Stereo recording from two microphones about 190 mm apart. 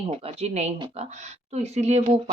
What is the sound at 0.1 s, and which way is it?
Speech, 35° right (ahead or behind).